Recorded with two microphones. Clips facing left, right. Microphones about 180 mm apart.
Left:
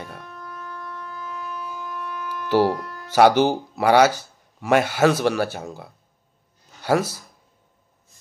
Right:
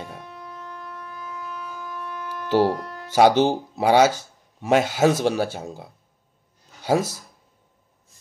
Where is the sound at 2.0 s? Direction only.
25° right (ahead or behind).